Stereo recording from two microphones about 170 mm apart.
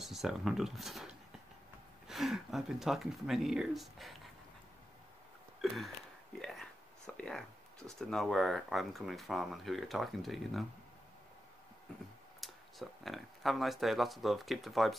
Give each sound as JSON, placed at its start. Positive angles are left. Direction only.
{"t": 0.0, "sound": "speech", "side_deg": 0}
{"t": 6.4, "sound": "speech", "side_deg": 5}
{"t": 12.4, "sound": "speech", "side_deg": 0}